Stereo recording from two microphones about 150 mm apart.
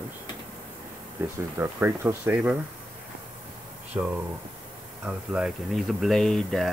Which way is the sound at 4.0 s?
15° right (ahead or behind).